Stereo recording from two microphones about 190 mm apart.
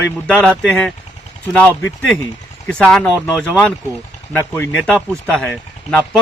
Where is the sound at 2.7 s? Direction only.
5° left (ahead or behind).